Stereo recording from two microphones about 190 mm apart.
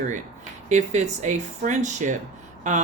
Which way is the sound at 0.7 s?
35° right (ahead or behind).